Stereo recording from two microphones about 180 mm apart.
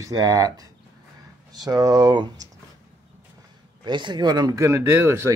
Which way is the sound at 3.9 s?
25° right (ahead or behind).